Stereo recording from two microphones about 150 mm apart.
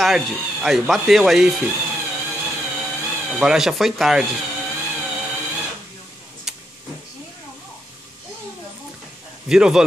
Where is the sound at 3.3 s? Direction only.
5° right (ahead or behind).